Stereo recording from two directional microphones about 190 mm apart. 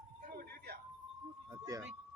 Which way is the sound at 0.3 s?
55° right (ahead or behind).